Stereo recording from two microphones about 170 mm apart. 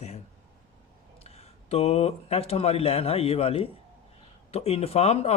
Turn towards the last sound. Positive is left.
turn(degrees=40)  # may be behind; listen again after turning